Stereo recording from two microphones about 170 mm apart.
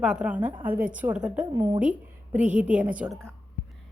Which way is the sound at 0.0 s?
5° right (ahead or behind).